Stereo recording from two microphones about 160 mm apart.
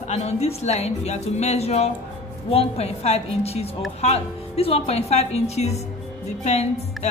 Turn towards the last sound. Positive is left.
turn(degrees=45)  # may be behind; listen again after turning